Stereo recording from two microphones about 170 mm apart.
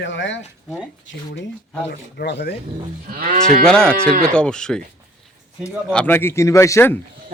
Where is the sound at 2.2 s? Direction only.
80° left.